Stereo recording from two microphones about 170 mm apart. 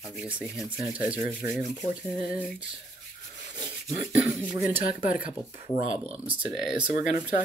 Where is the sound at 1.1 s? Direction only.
50° left (ahead or behind).